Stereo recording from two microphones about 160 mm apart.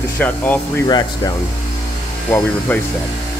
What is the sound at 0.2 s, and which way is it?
Speech, 10° left (ahead or behind).